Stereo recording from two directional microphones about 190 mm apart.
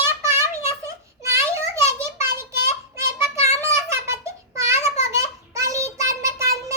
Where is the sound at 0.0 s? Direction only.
15° right (ahead or behind).